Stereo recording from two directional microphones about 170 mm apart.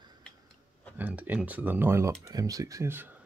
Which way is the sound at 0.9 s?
10° right (ahead or behind).